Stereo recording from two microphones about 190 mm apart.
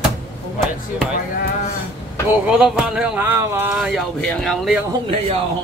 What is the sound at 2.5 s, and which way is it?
Speech, 5° right (ahead or behind).